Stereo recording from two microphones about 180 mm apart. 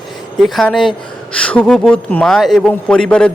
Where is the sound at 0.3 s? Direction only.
Centre (ahead or behind).